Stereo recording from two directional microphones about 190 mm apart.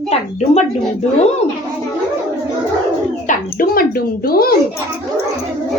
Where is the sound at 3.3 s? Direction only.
50° left (ahead or behind).